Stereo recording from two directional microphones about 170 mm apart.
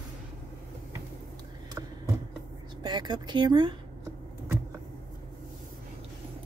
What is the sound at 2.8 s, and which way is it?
Speech, 25° right (ahead or behind).